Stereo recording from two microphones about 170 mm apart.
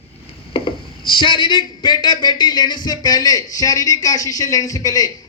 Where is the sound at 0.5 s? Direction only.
30° left (ahead or behind).